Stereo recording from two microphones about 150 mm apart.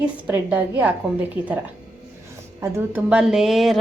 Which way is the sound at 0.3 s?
10° right (ahead or behind).